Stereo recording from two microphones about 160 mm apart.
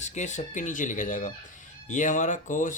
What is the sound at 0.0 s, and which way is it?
Speech, 50° left (ahead or behind).